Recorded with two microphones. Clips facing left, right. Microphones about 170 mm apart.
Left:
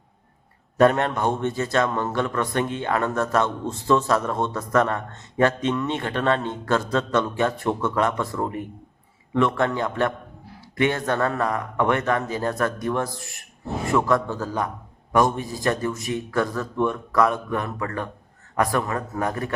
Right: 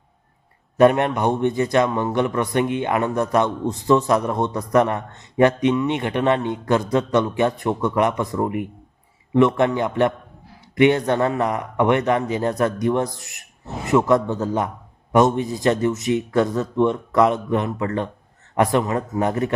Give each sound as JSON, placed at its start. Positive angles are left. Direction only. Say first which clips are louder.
{"t": 0.8, "sound": "a man's voice", "louder": "right 3 dB", "side_deg": -15}